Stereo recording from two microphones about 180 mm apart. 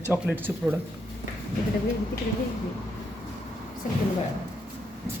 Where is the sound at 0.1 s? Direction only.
10° right (ahead or behind).